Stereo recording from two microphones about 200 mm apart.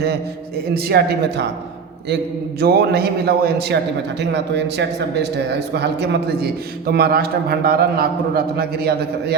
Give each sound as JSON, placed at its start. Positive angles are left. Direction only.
{"t": 0.7, "sound": "a man's voice", "side_deg": -50}
{"t": 2.6, "sound": "a man's voice", "side_deg": -50}